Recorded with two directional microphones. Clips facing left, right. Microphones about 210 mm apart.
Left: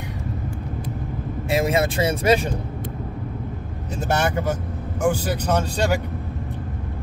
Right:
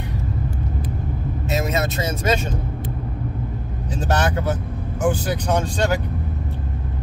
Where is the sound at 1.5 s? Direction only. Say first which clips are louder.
Left 3 dB; 30° left (ahead or behind).